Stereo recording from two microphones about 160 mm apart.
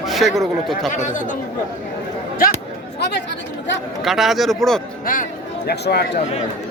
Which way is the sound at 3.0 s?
90° left.